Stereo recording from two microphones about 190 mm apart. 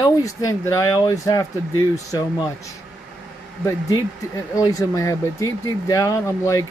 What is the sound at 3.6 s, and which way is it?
Speech, 15° left (ahead or behind).